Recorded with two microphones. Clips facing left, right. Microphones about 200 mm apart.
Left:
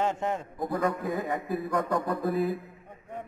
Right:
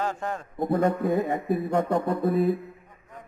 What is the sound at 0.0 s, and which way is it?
Speech, 20° left (ahead or behind).